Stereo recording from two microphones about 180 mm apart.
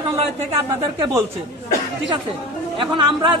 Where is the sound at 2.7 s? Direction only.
25° right (ahead or behind).